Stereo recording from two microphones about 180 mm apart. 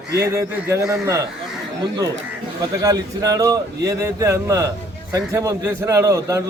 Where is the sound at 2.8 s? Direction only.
20° right (ahead or behind).